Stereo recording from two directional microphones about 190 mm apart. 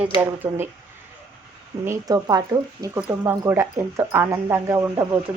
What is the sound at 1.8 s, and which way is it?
Speech, 20° right (ahead or behind).